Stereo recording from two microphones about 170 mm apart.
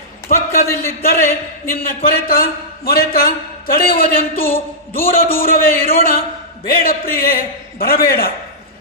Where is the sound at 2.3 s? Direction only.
60° left (ahead or behind).